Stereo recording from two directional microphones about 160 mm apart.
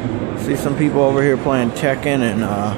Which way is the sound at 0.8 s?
20° right (ahead or behind).